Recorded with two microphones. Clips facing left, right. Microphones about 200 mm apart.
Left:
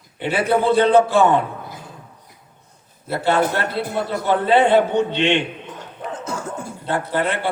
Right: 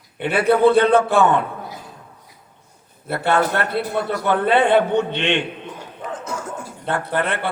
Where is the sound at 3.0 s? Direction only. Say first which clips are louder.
Left 1 dB; 55° right (ahead or behind).